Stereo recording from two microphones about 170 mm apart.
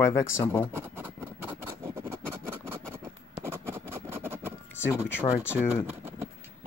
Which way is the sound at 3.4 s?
15° right (ahead or behind).